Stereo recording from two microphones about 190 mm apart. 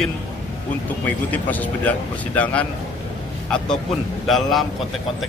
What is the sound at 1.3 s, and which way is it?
Speech, 10° left (ahead or behind).